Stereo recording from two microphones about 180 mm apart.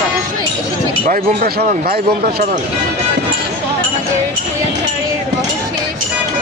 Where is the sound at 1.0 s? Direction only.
55° right (ahead or behind).